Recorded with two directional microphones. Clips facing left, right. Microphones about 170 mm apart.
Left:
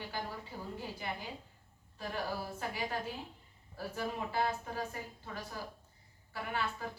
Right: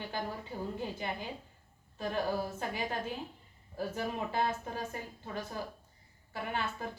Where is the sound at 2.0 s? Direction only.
20° right (ahead or behind).